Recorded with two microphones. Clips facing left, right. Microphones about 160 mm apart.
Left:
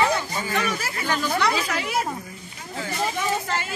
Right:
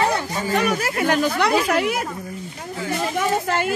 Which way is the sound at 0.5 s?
55° right (ahead or behind).